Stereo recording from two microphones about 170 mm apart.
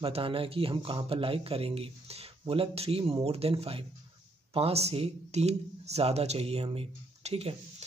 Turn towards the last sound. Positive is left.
turn(degrees=-40)  # may be behind; listen again after turning